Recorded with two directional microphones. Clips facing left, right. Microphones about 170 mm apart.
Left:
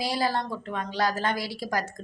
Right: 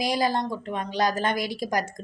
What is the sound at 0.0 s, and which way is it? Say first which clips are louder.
Speech: right 3 dB; 15° right (ahead or behind).